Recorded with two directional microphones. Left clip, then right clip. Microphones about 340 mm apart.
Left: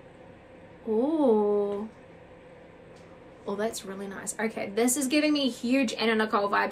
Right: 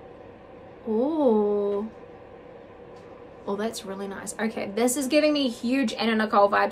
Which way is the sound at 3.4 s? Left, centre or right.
Centre.